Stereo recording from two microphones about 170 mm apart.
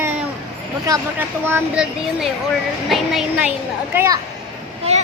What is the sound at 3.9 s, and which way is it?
Speech, 15° right (ahead or behind).